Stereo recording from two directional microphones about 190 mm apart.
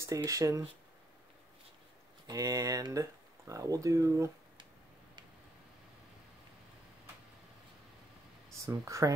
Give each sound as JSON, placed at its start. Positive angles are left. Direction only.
{"t": 0.0, "sound": "speech", "side_deg": -15}
{"t": 2.2, "sound": "speech", "side_deg": -20}
{"t": 8.5, "sound": "speech", "side_deg": -15}